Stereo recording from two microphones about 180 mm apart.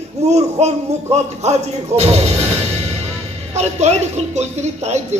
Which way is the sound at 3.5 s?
40° right (ahead or behind).